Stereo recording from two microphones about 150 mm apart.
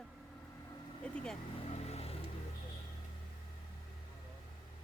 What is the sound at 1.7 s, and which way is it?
Vehicle, 45° left (ahead or behind).